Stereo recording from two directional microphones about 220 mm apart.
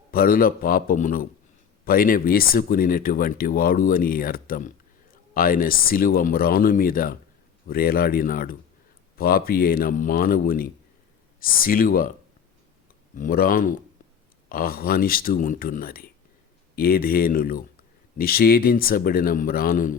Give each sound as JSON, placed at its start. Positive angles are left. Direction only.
{"t": 0.1, "sound": "speech", "side_deg": 40}
{"t": 13.1, "sound": "speech", "side_deg": 40}